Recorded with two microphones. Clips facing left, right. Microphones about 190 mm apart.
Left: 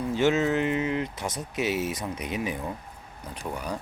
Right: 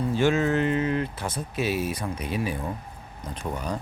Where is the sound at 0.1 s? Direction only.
20° left (ahead or behind).